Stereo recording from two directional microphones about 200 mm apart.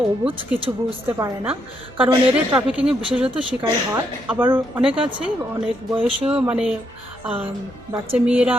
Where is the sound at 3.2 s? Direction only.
25° right (ahead or behind).